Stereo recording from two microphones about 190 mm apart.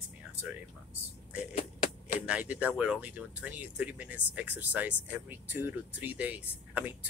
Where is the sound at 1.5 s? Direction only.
40° left (ahead or behind).